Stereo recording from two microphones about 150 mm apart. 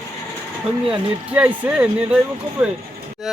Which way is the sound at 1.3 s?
10° right (ahead or behind).